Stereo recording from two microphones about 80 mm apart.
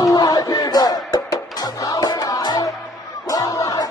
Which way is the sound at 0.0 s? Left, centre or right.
Left.